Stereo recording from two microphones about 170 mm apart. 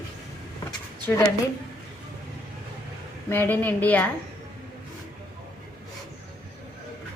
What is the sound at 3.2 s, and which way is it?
Speech, 10° left (ahead or behind).